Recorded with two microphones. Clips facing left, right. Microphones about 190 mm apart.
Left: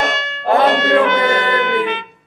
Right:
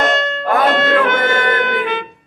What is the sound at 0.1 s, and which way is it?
Music, 50° right (ahead or behind).